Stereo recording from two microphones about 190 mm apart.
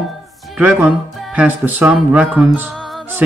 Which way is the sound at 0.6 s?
10° right (ahead or behind).